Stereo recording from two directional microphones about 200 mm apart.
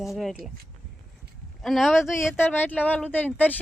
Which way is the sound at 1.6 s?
Centre (ahead or behind).